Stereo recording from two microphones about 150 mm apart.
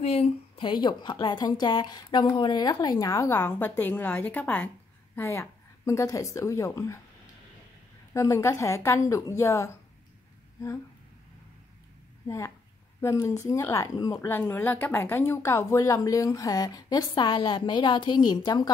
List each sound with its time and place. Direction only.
0.0 s a woman's voice: 45° left (ahead or behind); by 7.0 s 20° left (ahead or behind)
8.1 s speech: 20° left (ahead or behind)
12.3 s speech: 20° left (ahead or behind)